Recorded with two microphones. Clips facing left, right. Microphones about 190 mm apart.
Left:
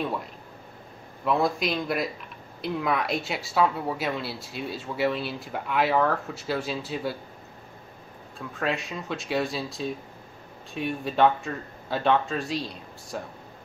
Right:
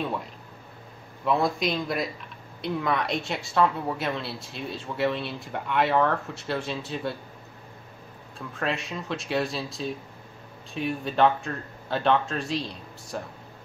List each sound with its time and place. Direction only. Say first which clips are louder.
1.2 s a woman's voice: even; centre (ahead or behind)
8.4 s a woman's voice: left 1 dB; centre (ahead or behind)